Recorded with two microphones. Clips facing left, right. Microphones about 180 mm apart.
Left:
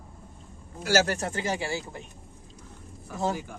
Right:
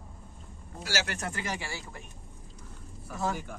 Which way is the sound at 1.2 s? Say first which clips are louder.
Left 6 dB; 30° left (ahead or behind).